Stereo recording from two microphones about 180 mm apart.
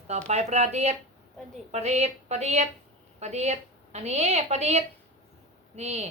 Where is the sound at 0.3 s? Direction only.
40° right (ahead or behind).